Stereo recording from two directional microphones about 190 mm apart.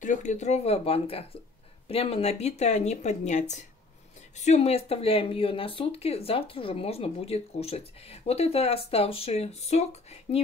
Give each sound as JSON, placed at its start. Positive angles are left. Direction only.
{"t": 0.0, "sound": "speech", "side_deg": 40}